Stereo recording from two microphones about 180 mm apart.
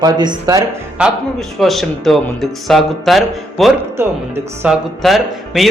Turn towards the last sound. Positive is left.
turn(degrees=0)  # may be behind; listen again after turning